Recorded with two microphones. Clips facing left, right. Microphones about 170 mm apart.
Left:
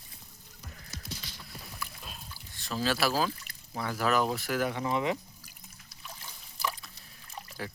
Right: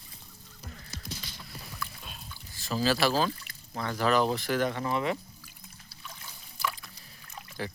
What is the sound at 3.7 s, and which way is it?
Speech, 5° left (ahead or behind).